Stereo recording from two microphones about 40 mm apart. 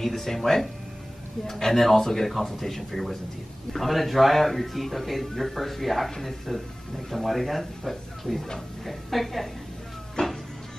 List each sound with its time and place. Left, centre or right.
0.0 s speech: centre
10.2 s music: left